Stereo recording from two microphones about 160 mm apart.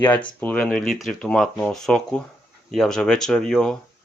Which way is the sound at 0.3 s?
10° left (ahead or behind).